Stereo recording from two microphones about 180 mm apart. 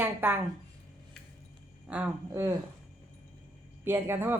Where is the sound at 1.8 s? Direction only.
5° right (ahead or behind).